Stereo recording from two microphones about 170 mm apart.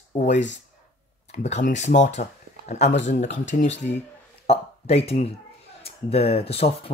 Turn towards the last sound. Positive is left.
turn(degrees=35)  # may be behind; listen again after turning